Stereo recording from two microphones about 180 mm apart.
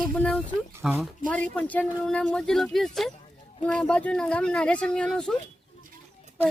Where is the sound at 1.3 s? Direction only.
5° left (ahead or behind).